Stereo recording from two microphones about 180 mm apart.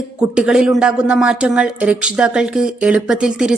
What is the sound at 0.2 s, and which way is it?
A woman's voice, 5° right (ahead or behind).